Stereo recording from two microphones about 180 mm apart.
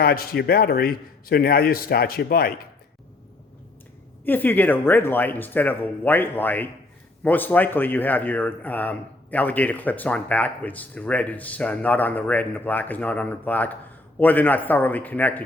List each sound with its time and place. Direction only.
0.0 s a man's voice: 55° left (ahead or behind)
4.2 s speech: 10° left (ahead or behind)